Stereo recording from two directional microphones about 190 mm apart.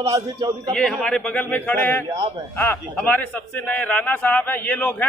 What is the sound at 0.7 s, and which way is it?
Speech, 5° left (ahead or behind).